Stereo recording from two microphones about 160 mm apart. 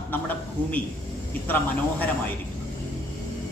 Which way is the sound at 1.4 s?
10° left (ahead or behind).